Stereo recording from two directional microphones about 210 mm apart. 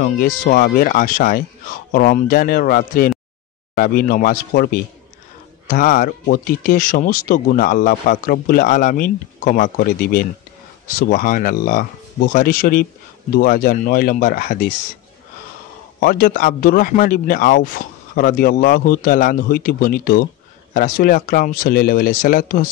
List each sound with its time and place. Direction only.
0.0 s a man's voice: 45° left (ahead or behind)
16.0 s a man's voice: 45° left (ahead or behind)